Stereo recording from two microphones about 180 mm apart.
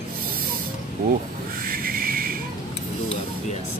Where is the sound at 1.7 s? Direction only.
55° right (ahead or behind).